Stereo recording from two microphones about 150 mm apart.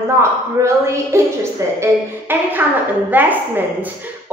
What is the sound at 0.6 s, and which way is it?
A woman's voice, 20° right (ahead or behind).